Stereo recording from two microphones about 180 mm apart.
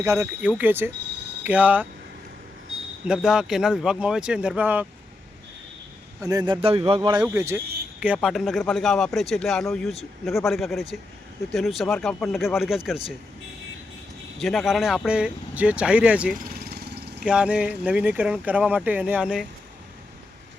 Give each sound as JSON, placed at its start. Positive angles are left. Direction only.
{"t": 0.0, "sound": "speech", "side_deg": -15}
{"t": 3.1, "sound": "speech", "side_deg": -5}
{"t": 6.2, "sound": "speech", "side_deg": -25}
{"t": 7.3, "sound": "speech", "side_deg": -15}
{"t": 14.3, "sound": "speech", "side_deg": 0}
{"t": 16.4, "sound": "vehicle", "side_deg": -55}
{"t": 17.2, "sound": "speech", "side_deg": -5}